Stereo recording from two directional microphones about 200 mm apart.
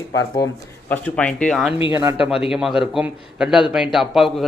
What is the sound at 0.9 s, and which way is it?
A man's voice, 5° left (ahead or behind).